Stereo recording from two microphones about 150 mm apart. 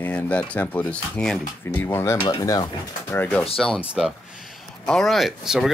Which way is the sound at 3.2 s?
10° left (ahead or behind).